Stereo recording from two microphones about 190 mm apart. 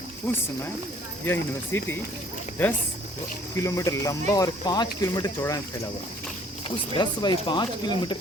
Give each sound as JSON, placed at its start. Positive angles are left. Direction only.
{"t": 0.2, "sound": "speech", "side_deg": 10}
{"t": 3.6, "sound": "speech", "side_deg": 15}
{"t": 6.7, "sound": "speech", "side_deg": 25}